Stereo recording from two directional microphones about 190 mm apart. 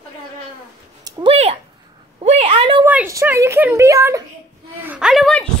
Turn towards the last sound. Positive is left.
turn(degrees=5)  # may be behind; listen again after turning